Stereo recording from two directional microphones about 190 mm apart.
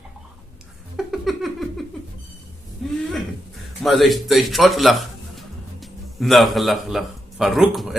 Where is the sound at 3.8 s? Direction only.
Centre (ahead or behind).